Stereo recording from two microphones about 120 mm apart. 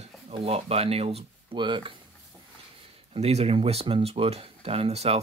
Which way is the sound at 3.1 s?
60° right (ahead or behind).